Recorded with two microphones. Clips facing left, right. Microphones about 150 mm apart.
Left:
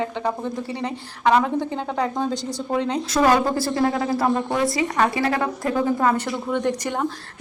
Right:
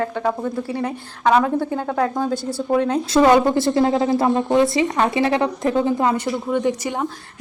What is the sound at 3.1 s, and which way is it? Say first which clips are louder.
A woman's voice: right 4 dB; 25° right (ahead or behind).